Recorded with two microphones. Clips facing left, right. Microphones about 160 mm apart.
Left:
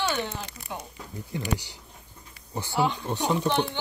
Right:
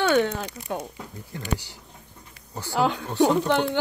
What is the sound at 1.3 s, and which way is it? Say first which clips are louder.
Speech: left 1 dB; 15° left (ahead or behind).